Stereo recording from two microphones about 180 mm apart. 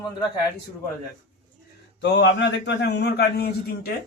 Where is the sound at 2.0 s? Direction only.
70° left (ahead or behind).